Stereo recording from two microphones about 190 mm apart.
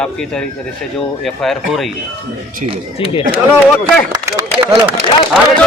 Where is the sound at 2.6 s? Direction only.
35° right (ahead or behind).